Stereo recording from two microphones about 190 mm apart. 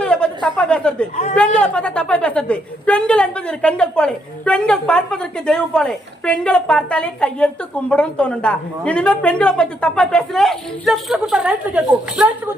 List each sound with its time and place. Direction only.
0.0 s a sound: 5° left (ahead or behind)
1.1 s a man's voice: 40° left (ahead or behind)
1.5 s a woman's voice: 5° left (ahead or behind)